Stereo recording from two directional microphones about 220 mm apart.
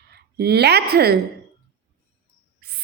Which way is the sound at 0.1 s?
45° right (ahead or behind).